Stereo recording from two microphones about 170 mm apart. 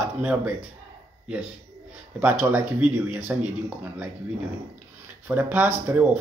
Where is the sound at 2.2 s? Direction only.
10° right (ahead or behind).